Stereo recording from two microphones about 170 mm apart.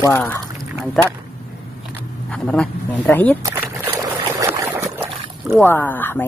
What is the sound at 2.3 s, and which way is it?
Speech, 5° left (ahead or behind).